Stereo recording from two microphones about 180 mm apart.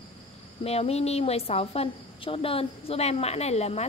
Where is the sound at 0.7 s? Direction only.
35° left (ahead or behind).